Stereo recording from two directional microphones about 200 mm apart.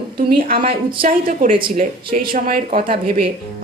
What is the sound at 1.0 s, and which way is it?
A woman's voice, 45° right (ahead or behind).